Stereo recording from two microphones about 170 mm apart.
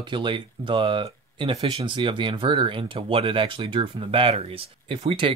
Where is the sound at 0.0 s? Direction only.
30° right (ahead or behind).